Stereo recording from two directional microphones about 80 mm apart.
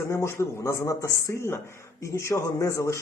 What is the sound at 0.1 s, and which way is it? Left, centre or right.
A man's voice, left.